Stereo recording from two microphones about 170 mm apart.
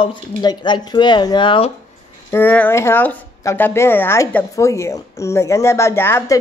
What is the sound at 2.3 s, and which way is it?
Speech, 10° left (ahead or behind).